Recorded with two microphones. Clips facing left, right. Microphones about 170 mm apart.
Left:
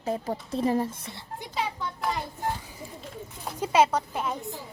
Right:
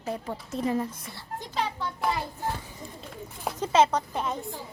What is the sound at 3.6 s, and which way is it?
Speech, 10° left (ahead or behind).